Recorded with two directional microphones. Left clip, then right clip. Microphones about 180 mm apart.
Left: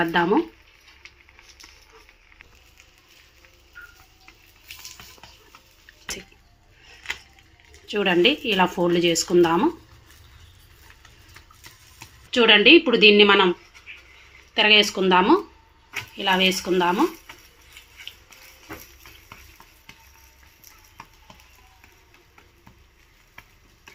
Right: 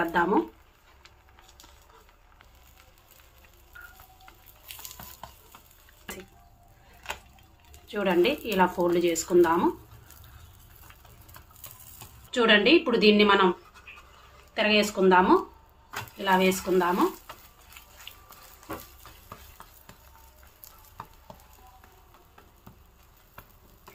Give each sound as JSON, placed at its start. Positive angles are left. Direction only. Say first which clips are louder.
{"t": 0.0, "sound": "speech", "louder": "left 4 dB", "side_deg": 30}
{"t": 7.9, "sound": "speech", "louder": "left 5 dB", "side_deg": 40}
{"t": 12.3, "sound": "speech", "louder": "left 6 dB", "side_deg": 35}
{"t": 14.5, "sound": "speech", "louder": "left 7 dB", "side_deg": 35}